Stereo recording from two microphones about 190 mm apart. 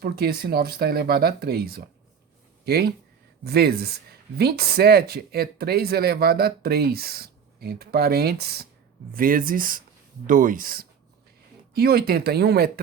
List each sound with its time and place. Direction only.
0.0 s speech: 55° right (ahead or behind)